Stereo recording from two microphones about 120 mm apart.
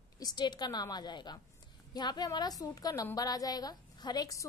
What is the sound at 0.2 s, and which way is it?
A woman's voice, 35° left (ahead or behind).